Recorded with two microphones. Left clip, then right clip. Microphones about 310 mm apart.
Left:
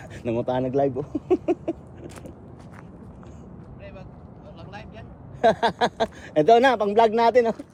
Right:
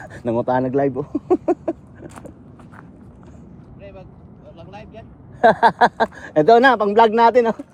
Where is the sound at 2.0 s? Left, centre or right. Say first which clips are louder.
Right 3 dB; centre.